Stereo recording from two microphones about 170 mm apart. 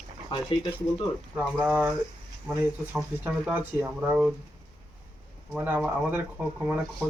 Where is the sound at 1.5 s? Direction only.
10° right (ahead or behind).